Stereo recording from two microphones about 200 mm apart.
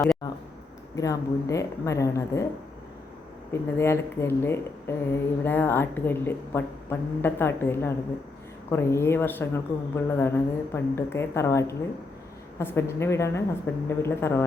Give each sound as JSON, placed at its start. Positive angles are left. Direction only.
{"t": 0.9, "sound": "speech", "side_deg": 15}
{"t": 3.5, "sound": "speech", "side_deg": 10}